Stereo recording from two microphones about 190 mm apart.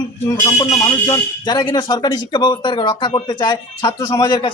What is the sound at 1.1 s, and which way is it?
A woman's voice, 20° left (ahead or behind).